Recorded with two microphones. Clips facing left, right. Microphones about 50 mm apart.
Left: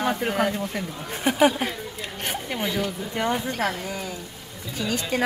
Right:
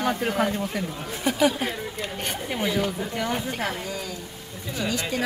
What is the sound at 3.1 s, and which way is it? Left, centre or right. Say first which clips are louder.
Speech: left 2 dB; left.